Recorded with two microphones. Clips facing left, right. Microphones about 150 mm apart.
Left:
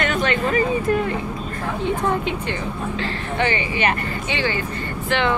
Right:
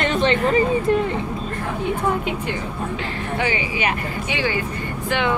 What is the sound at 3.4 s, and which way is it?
Speech, 10° right (ahead or behind).